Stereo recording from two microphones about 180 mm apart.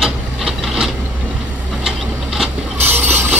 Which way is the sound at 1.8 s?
Centre (ahead or behind).